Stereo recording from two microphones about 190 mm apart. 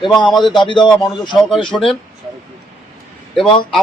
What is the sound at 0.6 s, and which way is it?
Speech, 25° left (ahead or behind).